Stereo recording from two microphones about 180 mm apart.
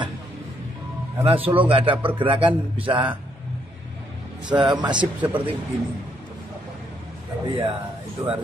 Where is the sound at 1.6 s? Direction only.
30° right (ahead or behind).